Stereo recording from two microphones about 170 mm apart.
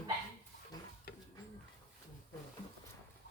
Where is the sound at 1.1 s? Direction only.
65° left (ahead or behind).